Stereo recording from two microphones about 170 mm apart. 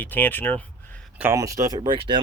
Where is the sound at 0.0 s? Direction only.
10° left (ahead or behind).